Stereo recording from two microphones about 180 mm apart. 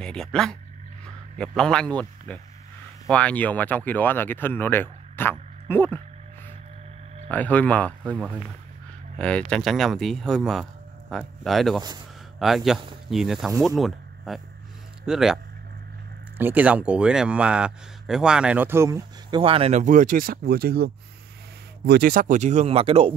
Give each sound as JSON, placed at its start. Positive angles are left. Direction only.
{"t": 0.0, "sound": "speech", "side_deg": 5}
{"t": 1.6, "sound": "speech", "side_deg": 5}
{"t": 7.2, "sound": "speech", "side_deg": 10}
{"t": 9.2, "sound": "speech", "side_deg": 5}
{"t": 19.4, "sound": "speech", "side_deg": -30}